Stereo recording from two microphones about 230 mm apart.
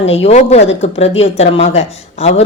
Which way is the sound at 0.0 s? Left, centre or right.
Left.